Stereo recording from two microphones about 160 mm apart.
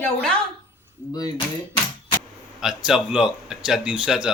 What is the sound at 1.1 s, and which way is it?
Speech, 25° left (ahead or behind).